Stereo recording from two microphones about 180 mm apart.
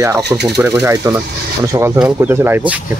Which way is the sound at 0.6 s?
15° right (ahead or behind).